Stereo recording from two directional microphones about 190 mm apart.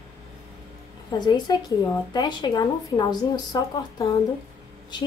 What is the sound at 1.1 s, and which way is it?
A woman's voice, 20° left (ahead or behind).